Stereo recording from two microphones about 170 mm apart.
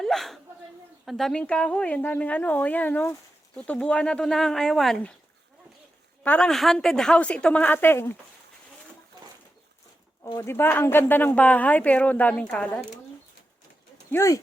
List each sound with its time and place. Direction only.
0.0 s a sound: centre (ahead or behind)
1.0 s a woman's voice: centre (ahead or behind)
6.2 s a woman's voice: 5° left (ahead or behind)
10.2 s a woman's voice: 15° left (ahead or behind)
14.1 s a woman's voice: 15° left (ahead or behind)